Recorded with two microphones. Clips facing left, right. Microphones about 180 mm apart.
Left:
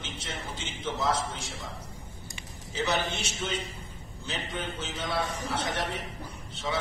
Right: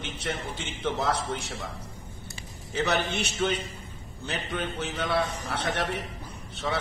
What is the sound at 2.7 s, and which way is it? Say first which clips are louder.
A man's voice: right 3 dB; 60° right (ahead or behind).